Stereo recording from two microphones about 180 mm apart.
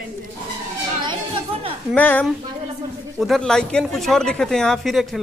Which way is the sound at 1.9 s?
10° left (ahead or behind).